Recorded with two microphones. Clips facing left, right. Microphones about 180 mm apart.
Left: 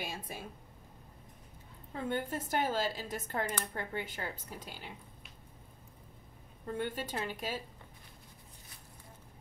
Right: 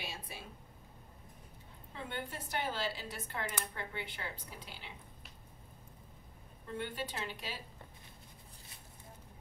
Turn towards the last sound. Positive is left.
turn(degrees=45)  # may be behind; listen again after turning